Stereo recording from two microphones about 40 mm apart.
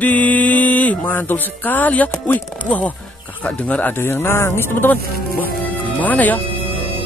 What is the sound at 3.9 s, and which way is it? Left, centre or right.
Speech, left.